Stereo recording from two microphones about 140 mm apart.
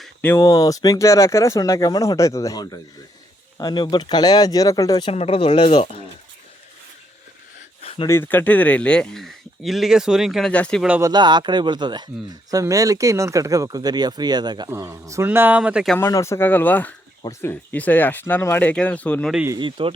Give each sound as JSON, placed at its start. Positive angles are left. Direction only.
{"t": 0.2, "sound": "speech", "side_deg": 15}
{"t": 0.4, "sound": "speech", "side_deg": 25}
{"t": 5.1, "sound": "speech", "side_deg": 45}
{"t": 7.8, "sound": "a sound", "side_deg": 45}
{"t": 8.0, "sound": "speech", "side_deg": 15}
{"t": 11.0, "sound": "speech", "side_deg": -30}
{"t": 16.0, "sound": "speech", "side_deg": 20}
{"t": 19.5, "sound": "speech", "side_deg": -35}